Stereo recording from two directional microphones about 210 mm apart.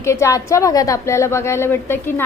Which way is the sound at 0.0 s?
15° left (ahead or behind).